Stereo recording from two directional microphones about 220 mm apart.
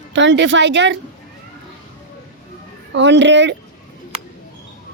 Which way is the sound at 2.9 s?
55° right (ahead or behind).